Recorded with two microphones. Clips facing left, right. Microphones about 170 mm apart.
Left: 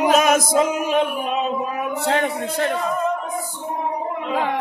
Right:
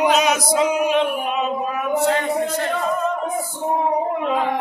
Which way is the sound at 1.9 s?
65° left (ahead or behind).